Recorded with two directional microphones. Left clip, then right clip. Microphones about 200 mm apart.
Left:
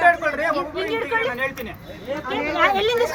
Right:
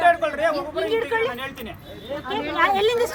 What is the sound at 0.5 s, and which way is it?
Speech, 35° right (ahead or behind).